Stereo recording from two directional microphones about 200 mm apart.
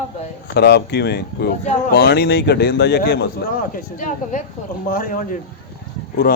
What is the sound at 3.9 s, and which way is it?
Speech, 40° left (ahead or behind).